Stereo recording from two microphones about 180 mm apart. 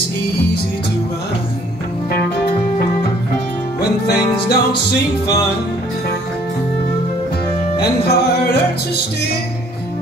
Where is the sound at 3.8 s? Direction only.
65° left (ahead or behind).